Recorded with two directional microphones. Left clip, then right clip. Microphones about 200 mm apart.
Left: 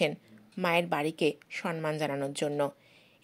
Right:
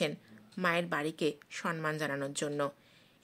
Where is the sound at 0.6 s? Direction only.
15° left (ahead or behind).